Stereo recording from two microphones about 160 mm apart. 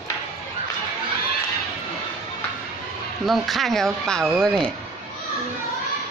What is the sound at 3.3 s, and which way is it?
Speech, centre (ahead or behind).